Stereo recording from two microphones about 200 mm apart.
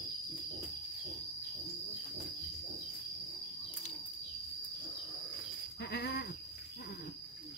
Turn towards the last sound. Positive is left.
turn(degrees=55)  # may be behind; listen again after turning